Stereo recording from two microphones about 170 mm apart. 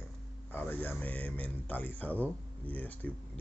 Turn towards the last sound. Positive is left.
turn(degrees=10)  # may be behind; listen again after turning